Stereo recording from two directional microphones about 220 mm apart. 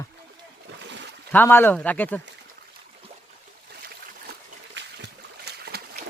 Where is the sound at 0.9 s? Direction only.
55° right (ahead or behind).